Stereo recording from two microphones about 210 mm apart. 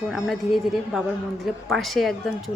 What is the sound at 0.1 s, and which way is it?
A woman's voice, centre (ahead or behind).